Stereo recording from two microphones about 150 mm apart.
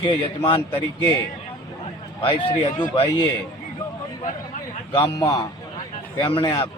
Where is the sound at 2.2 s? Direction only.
30° left (ahead or behind).